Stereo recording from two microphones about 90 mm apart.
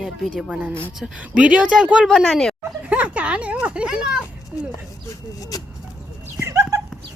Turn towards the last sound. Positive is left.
turn(degrees=-35)  # may be behind; listen again after turning